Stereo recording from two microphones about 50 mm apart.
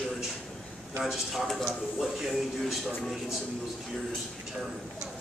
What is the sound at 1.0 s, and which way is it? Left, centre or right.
A man's voice, centre.